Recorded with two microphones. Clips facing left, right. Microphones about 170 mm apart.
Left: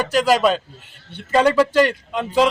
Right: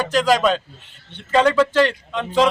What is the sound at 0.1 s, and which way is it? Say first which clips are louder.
A man's voice: left 1 dB; 10° left (ahead or behind).